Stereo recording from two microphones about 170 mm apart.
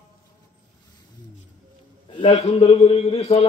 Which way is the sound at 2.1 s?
30° left (ahead or behind).